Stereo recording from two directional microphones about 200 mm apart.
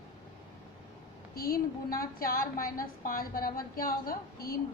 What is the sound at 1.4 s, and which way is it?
A woman's voice, 50° left (ahead or behind).